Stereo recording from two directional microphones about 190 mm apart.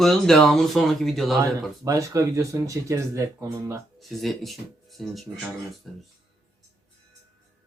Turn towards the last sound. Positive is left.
turn(degrees=0)  # may be behind; listen again after turning